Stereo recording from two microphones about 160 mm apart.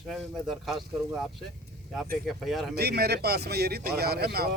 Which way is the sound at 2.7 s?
80° right.